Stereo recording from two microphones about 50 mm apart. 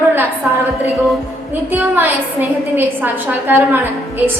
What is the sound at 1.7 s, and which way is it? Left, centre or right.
A woman's voice, right.